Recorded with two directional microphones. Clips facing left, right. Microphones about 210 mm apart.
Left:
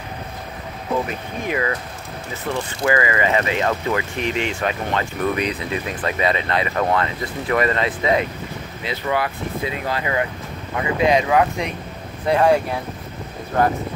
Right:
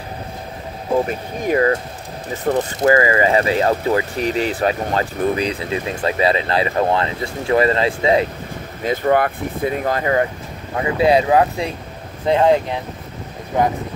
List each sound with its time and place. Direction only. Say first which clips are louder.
1.0 s speech: right 4 dB; 40° right (ahead or behind)
8.8 s speech: right 7 dB; 45° right (ahead or behind); by 13.7 s 15° right (ahead or behind)